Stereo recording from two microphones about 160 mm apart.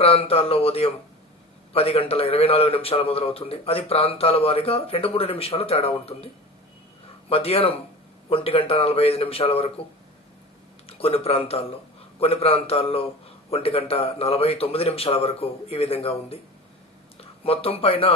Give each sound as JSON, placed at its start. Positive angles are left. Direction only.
{"t": 0.0, "sound": "a man's voice", "side_deg": 35}
{"t": 10.9, "sound": "a man's voice", "side_deg": 40}